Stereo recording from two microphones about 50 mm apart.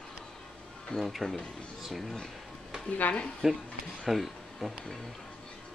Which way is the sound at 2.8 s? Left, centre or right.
Left.